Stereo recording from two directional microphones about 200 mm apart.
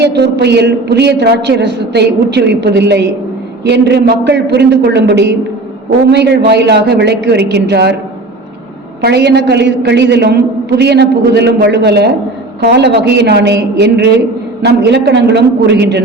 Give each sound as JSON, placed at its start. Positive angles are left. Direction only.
{"t": 0.2, "sound": "a man's voice", "side_deg": -55}
{"t": 9.0, "sound": "a man's voice", "side_deg": -55}